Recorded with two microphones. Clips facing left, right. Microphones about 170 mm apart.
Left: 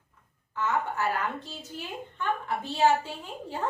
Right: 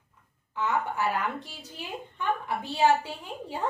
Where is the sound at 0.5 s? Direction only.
15° right (ahead or behind).